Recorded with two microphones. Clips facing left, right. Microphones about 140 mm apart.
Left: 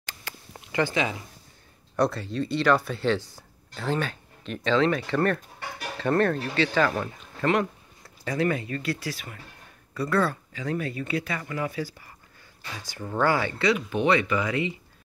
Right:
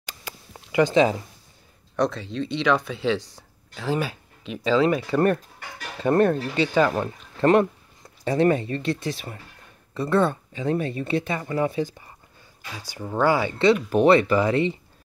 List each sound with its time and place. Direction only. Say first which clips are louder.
0.0 s a sound: right 2 dB; 15° right (ahead or behind)
2.0 s speech: right 1 dB; 5° left (ahead or behind); by 12.1 s 25° right (ahead or behind)
12.8 s speech: right 3 dB; 15° right (ahead or behind)
13.8 s speech: right 6 dB; 40° right (ahead or behind)